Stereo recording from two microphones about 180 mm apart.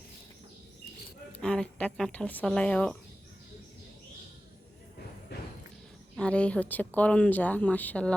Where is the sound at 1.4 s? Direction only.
5° left (ahead or behind).